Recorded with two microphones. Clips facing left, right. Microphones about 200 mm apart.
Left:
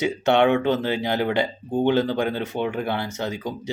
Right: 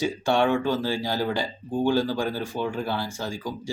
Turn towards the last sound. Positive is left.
turn(degrees=20)  # may be behind; listen again after turning